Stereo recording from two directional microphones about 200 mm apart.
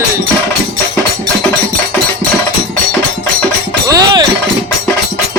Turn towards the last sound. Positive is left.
turn(degrees=-20)  # may be behind; listen again after turning